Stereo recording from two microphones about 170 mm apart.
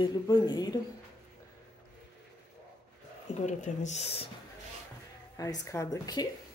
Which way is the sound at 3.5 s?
45° left (ahead or behind).